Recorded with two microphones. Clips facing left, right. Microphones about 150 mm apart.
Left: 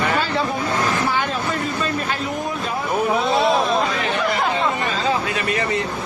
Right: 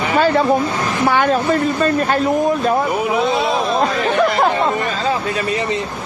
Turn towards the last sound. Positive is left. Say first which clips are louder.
# right 6 dB
turn(degrees=-45)  # may be behind; listen again after turning